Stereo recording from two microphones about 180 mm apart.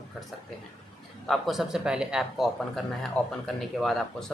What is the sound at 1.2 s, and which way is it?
Speech, centre (ahead or behind).